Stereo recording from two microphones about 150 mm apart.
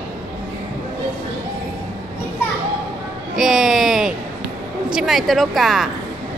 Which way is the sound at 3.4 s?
5° right (ahead or behind).